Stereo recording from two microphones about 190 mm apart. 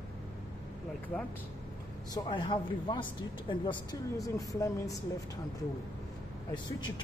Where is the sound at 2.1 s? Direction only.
25° left (ahead or behind).